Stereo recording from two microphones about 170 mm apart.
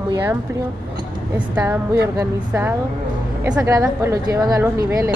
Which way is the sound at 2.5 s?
10° right (ahead or behind).